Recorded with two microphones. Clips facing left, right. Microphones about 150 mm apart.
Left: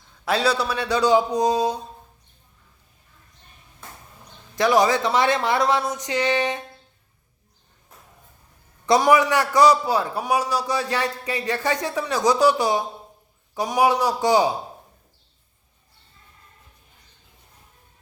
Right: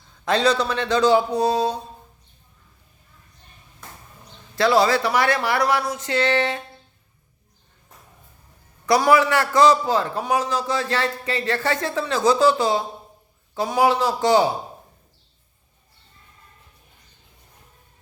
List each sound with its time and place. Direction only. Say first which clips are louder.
0.3 s a man's voice: right 2 dB; 10° left (ahead or behind)
4.5 s speech: right 1 dB; 15° left (ahead or behind)
8.9 s a man's voice: even; 20° left (ahead or behind)